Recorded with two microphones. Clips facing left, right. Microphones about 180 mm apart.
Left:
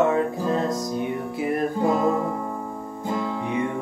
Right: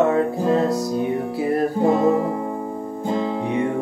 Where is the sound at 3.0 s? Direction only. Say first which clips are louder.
Right 4 dB; 25° right (ahead or behind).